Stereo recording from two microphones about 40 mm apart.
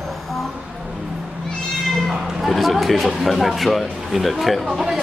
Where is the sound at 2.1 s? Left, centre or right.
Centre.